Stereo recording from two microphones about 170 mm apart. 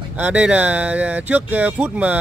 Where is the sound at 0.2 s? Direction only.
10° right (ahead or behind).